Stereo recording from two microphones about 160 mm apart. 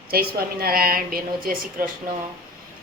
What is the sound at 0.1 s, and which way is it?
A woman's voice, 70° right (ahead or behind).